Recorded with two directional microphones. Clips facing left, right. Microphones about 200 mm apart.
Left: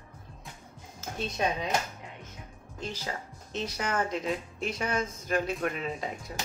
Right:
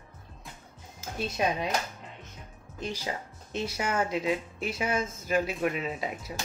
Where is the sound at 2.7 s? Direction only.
15° right (ahead or behind).